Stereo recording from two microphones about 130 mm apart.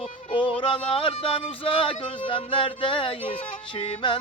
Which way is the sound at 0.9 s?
45° left (ahead or behind).